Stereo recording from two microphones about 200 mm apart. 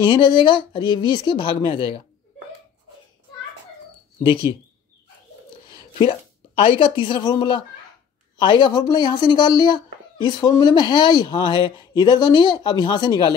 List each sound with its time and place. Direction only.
0.1 s speech: 25° left (ahead or behind)
5.7 s a sound: 25° left (ahead or behind)
6.6 s speech: 25° left (ahead or behind)